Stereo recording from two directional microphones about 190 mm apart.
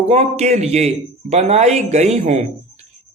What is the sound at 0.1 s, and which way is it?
Speech, 35° right (ahead or behind).